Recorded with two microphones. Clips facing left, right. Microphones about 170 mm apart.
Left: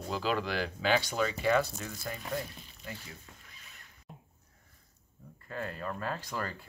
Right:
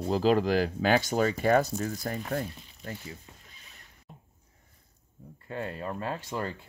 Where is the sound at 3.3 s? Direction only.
25° right (ahead or behind).